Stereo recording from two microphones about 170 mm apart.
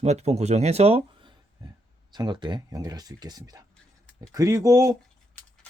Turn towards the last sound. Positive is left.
turn(degrees=-20)  # may be behind; listen again after turning